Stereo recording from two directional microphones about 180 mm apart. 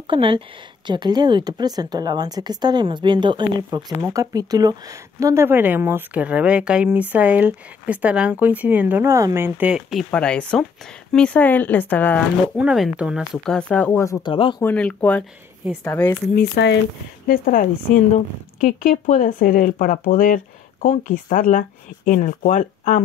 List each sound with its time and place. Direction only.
0.0 s a woman's voice: 30° right (ahead or behind); by 12.3 s 10° left (ahead or behind)
12.5 s speech: 5° right (ahead or behind); by 14.2 s 10° left (ahead or behind)
14.2 s speech: 25° left (ahead or behind)
14.6 s speech: 10° left (ahead or behind)
16.3 s speech: 70° left (ahead or behind)
17.3 s speech: 50° left (ahead or behind)